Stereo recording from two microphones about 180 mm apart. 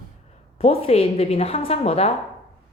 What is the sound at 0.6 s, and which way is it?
A woman's voice, 35° left (ahead or behind).